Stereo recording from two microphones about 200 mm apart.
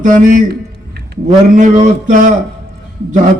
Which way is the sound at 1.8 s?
40° right (ahead or behind).